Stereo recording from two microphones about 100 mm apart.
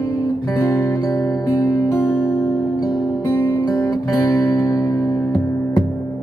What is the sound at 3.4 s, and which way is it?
Music, 35° left (ahead or behind).